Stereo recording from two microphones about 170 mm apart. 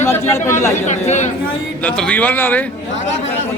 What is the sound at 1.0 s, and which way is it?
Speech, 45° left (ahead or behind).